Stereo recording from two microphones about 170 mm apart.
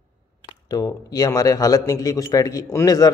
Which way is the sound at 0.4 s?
20° left (ahead or behind).